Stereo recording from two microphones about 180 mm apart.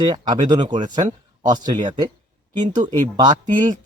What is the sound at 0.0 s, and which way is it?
Speech, 25° right (ahead or behind).